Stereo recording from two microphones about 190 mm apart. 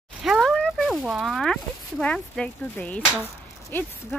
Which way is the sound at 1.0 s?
Centre (ahead or behind).